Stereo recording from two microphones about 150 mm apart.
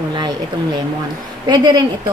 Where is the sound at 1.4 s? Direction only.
30° right (ahead or behind).